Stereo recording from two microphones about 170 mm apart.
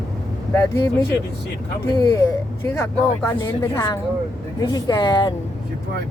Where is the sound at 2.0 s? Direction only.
20° left (ahead or behind).